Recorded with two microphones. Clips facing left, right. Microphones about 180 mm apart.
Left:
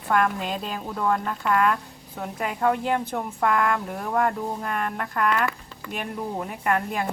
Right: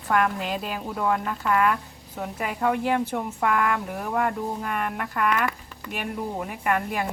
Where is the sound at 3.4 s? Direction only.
45° left (ahead or behind).